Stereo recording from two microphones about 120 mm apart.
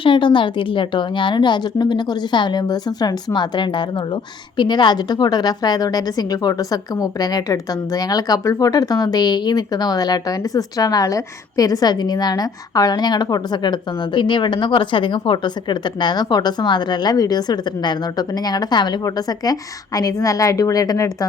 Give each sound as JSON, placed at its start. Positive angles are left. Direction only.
{"t": 0.0, "sound": "a woman's voice", "side_deg": 45}